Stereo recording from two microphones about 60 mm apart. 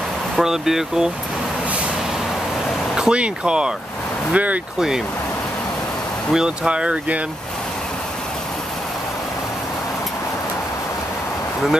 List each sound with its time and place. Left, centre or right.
0.4 s speech: centre
2.9 s speech: centre
4.7 s speech: centre
6.3 s speech: centre